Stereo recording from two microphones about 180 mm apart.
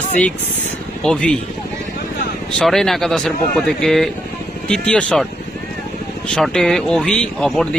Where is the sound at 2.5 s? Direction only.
Centre (ahead or behind).